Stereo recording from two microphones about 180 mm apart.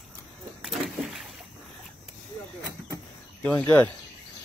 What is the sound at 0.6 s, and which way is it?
Vehicle, centre (ahead or behind).